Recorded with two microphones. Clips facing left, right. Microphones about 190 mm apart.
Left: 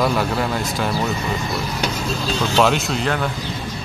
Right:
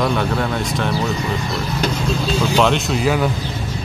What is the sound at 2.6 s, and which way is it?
Speech, centre (ahead or behind).